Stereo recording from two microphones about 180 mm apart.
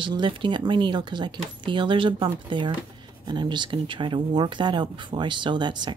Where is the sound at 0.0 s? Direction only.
25° right (ahead or behind).